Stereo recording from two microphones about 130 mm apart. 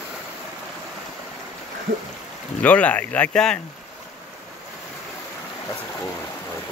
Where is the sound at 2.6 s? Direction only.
10° left (ahead or behind).